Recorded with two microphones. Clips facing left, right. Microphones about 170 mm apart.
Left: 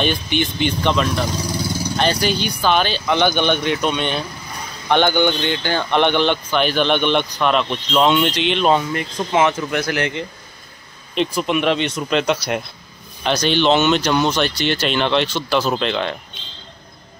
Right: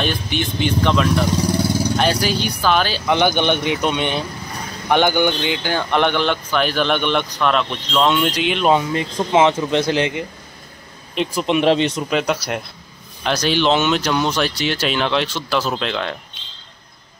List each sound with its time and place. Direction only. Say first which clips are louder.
0.0 s speech: left 2 dB; centre (ahead or behind)
3.1 s speech: right 1 dB; 15° right (ahead or behind); by 8.2 s 5° left (ahead or behind)
8.2 s speech: left 1 dB; 5° right (ahead or behind)
11.3 s speech: right 4 dB; 25° right (ahead or behind)
12.0 s speech: left 1 dB; 5° right (ahead or behind)